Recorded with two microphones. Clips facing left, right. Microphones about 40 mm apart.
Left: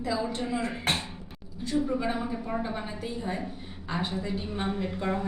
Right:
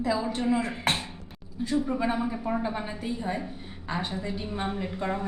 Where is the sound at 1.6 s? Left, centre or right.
Centre.